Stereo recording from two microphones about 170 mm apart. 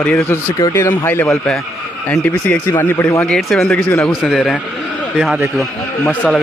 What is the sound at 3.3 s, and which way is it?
Speech, centre (ahead or behind).